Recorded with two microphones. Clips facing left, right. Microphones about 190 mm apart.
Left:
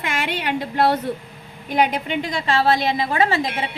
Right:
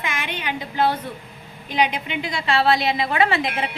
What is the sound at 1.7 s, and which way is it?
A woman's voice, 45° left (ahead or behind).